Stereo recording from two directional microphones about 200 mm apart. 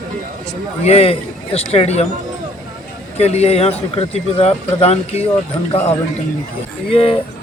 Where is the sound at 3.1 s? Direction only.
30° left (ahead or behind).